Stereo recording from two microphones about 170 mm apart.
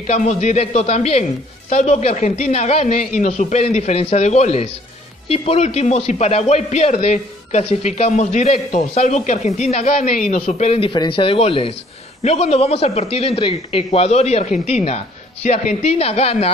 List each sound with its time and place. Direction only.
0.0 s a man's voice: 45° left (ahead or behind)